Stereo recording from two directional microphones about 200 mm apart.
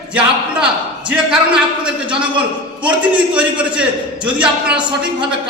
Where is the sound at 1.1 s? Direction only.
5° right (ahead or behind).